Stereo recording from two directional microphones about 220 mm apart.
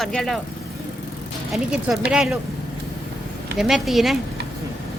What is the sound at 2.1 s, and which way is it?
Speech, centre (ahead or behind).